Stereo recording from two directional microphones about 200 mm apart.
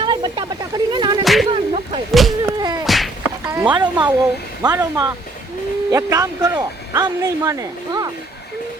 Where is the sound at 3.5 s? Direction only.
10° right (ahead or behind).